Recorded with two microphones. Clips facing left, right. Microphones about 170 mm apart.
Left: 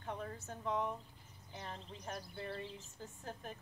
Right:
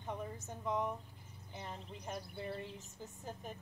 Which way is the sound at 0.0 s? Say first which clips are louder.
Right 1 dB; 15° right (ahead or behind).